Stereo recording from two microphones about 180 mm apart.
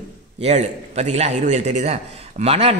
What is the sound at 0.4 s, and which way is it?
A man's voice, 35° right (ahead or behind).